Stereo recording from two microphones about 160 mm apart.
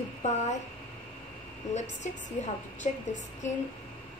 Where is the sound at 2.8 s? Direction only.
50° left (ahead or behind).